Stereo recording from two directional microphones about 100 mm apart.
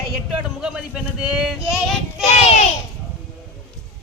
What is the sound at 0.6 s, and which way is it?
Speech, 10° right (ahead or behind).